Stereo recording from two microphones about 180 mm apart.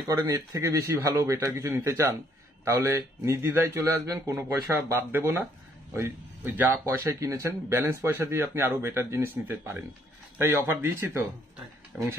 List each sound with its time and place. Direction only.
0.1 s speech: 20° right (ahead or behind)